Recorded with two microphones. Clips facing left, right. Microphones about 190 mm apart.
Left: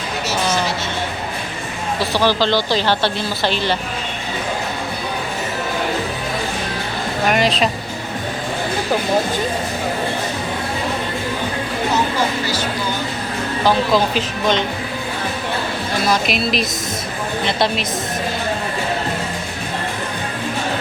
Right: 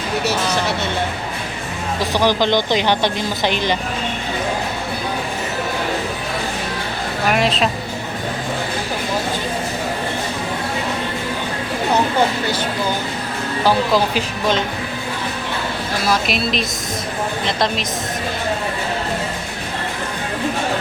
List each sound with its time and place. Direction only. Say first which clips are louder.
2.0 s speech: even; 15° right (ahead or behind)
7.3 s speech: even; centre (ahead or behind)
13.7 s speech: even; 10° right (ahead or behind)
16.0 s speech: even; centre (ahead or behind)